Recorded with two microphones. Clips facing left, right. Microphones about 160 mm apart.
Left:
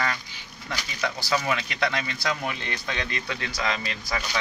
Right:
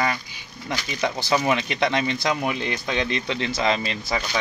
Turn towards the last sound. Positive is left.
turn(degrees=-25)  # may be behind; listen again after turning